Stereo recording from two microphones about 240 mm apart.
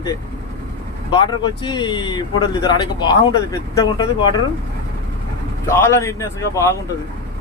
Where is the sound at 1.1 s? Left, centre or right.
Centre.